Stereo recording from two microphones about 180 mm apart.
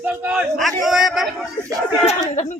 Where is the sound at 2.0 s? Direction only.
35° left (ahead or behind).